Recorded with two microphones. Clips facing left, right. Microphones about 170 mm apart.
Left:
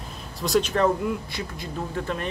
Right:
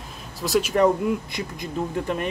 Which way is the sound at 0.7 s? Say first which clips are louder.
Right 3 dB; 15° right (ahead or behind).